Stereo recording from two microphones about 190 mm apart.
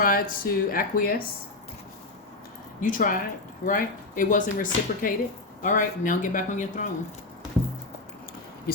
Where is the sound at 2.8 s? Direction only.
45° left (ahead or behind).